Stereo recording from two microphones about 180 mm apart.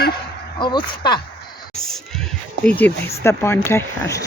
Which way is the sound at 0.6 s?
25° left (ahead or behind).